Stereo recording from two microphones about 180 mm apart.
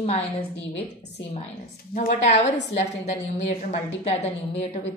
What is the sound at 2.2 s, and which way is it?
A woman's voice, 40° left (ahead or behind).